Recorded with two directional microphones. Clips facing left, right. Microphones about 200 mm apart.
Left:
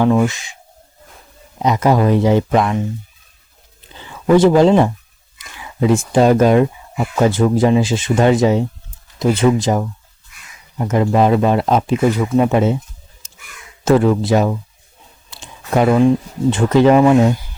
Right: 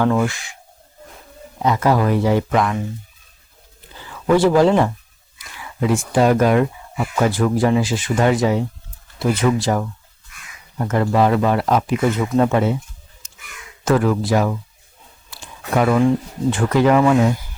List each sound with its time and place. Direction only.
0.0 s speech: 20° left (ahead or behind)
1.5 s speech: 20° left (ahead or behind)
3.9 s speech: 20° left (ahead or behind)
13.8 s speech: 25° left (ahead or behind)